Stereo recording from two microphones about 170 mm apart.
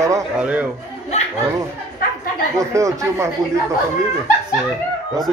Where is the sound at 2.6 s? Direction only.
20° right (ahead or behind).